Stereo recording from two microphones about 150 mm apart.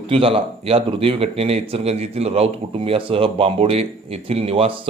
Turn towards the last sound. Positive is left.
turn(degrees=-40)  # may be behind; listen again after turning